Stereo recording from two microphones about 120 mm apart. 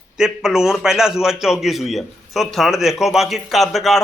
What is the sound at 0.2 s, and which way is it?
A man's voice, 5° right (ahead or behind).